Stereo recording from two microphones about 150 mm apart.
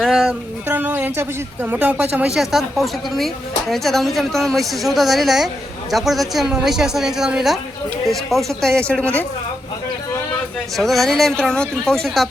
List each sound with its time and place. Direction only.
0.0 s a sound: centre (ahead or behind)
0.7 s a woman's voice: 10° right (ahead or behind); by 9.0 s 5° left (ahead or behind)
10.8 s a woman's voice: centre (ahead or behind)